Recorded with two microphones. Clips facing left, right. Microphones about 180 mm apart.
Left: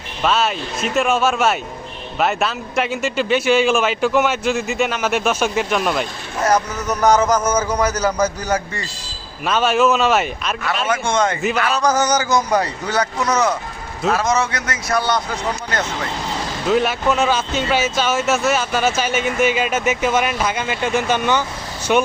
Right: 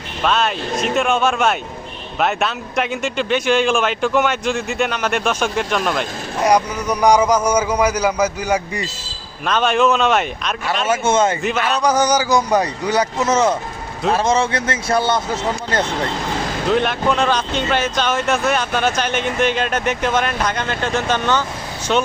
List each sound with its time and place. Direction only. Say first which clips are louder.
0.2 s speech: even; 5° left (ahead or behind)
6.4 s a man's voice: right 2 dB; 10° right (ahead or behind)
9.4 s speech: even; 5° left (ahead or behind)
11.0 s a man's voice: right 4 dB; 25° right (ahead or behind)
11.8 s a man's voice: right 3 dB; 10° right (ahead or behind)
16.6 s speech: left 1 dB; 5° left (ahead or behind)